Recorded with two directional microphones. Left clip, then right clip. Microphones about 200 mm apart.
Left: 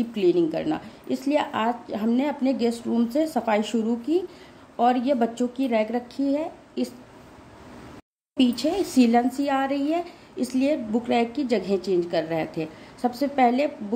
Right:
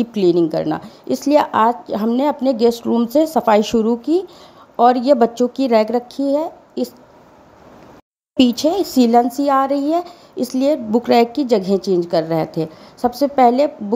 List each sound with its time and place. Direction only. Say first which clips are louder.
0.0 s a woman's voice: right 6 dB; 40° right (ahead or behind)
8.4 s a woman's voice: right 8 dB; 40° right (ahead or behind)